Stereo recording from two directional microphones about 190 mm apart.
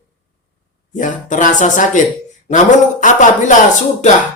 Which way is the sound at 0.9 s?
40° left (ahead or behind).